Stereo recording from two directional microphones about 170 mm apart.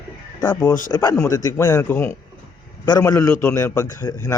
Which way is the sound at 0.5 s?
10° left (ahead or behind).